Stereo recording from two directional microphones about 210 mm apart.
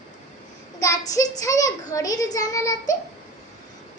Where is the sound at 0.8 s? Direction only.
15° left (ahead or behind).